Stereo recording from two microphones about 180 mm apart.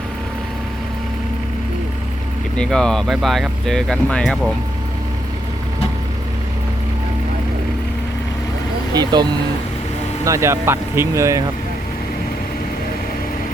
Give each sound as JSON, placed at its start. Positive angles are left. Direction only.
{"t": 2.6, "sound": "speech", "side_deg": 5}
{"t": 8.9, "sound": "speech", "side_deg": -20}
{"t": 10.2, "sound": "speech", "side_deg": -15}